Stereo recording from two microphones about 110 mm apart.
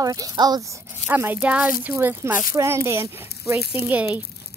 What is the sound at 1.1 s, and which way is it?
Speech, 15° right (ahead or behind).